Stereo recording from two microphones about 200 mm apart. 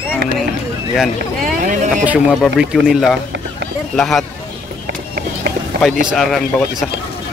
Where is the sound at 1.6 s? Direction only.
40° right (ahead or behind).